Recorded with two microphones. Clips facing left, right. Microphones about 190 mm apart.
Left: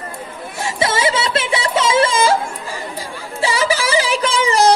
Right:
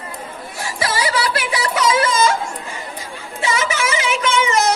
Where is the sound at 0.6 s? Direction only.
25° left (ahead or behind).